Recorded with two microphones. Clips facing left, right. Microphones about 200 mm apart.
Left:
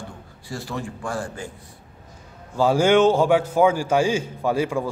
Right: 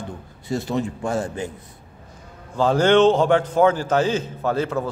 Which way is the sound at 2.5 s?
10° left (ahead or behind).